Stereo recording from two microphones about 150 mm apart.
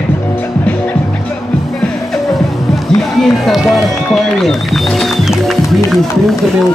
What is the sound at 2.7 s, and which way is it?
Run, centre (ahead or behind).